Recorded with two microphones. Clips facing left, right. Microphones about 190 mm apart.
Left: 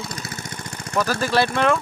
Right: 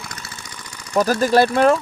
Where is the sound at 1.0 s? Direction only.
45° right (ahead or behind).